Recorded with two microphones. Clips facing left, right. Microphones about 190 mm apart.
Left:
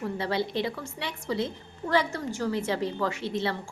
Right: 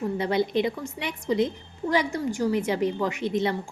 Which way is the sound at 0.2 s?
20° right (ahead or behind).